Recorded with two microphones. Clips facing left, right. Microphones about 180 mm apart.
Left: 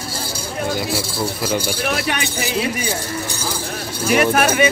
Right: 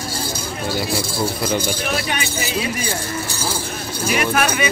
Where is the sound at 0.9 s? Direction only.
10° left (ahead or behind).